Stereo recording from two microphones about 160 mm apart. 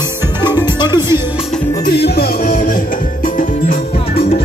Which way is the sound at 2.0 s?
70° left (ahead or behind).